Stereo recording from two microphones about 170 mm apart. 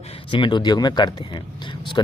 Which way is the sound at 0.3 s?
30° left (ahead or behind).